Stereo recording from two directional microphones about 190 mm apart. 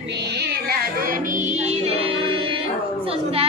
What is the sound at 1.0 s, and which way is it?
Child singing, 45° right (ahead or behind).